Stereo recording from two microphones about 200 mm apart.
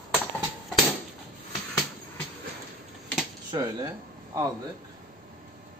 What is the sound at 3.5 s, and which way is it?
Speech, 25° right (ahead or behind).